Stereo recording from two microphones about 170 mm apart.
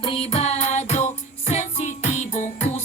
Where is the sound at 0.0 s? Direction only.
30° left (ahead or behind).